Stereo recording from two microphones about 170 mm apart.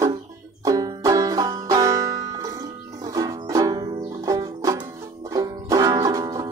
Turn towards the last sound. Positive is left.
turn(degrees=-20)  # may be behind; listen again after turning